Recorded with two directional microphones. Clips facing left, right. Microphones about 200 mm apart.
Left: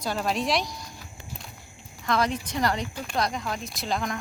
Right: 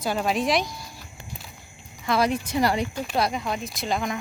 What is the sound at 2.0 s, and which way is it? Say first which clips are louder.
Speech: right 3 dB; 10° right (ahead or behind).